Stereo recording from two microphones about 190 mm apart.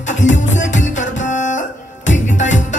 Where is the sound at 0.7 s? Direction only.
40° left (ahead or behind).